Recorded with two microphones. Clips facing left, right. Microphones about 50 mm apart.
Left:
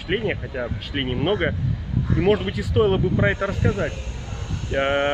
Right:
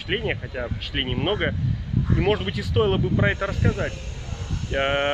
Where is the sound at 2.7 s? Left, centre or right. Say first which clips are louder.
Left 2 dB; centre.